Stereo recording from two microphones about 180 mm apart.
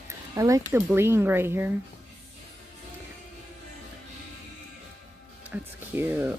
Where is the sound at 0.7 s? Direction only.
15° right (ahead or behind).